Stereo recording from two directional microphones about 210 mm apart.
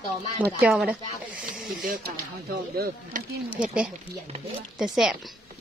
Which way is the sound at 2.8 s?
40° right (ahead or behind).